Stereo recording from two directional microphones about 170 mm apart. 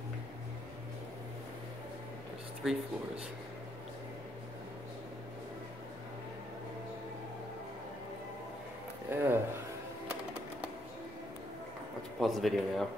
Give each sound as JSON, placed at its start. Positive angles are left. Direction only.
{"t": 2.6, "sound": "speech", "side_deg": -5}
{"t": 9.1, "sound": "a sound", "side_deg": -15}
{"t": 12.2, "sound": "speech", "side_deg": 0}